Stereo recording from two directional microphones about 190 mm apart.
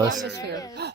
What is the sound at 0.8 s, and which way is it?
Speech, 60° right (ahead or behind).